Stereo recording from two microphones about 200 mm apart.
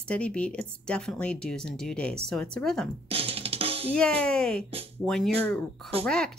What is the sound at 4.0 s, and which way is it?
A woman's voice, 5° left (ahead or behind).